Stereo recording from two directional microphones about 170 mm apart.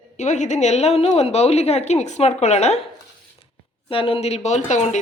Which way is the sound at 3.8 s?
30° left (ahead or behind).